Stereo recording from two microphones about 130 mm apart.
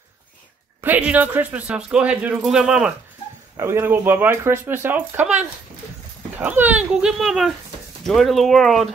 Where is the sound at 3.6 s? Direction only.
20° right (ahead or behind).